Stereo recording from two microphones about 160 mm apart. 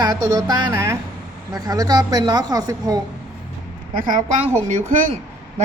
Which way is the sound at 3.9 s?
55° right (ahead or behind).